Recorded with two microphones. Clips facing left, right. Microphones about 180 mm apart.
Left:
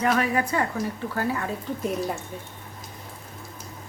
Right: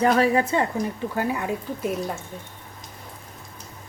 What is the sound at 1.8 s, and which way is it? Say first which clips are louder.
Speech: left 2 dB; 5° right (ahead or behind).